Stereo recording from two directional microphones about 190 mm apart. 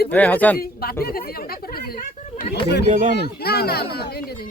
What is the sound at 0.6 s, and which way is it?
Speech, 55° left (ahead or behind).